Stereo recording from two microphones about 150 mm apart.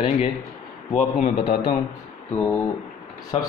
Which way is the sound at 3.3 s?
40° left (ahead or behind).